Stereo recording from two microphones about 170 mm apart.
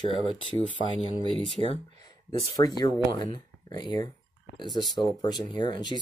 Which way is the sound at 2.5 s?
25° left (ahead or behind).